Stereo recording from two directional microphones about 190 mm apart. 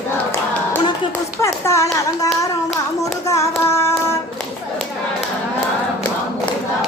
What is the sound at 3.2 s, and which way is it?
Child singing, 15° left (ahead or behind).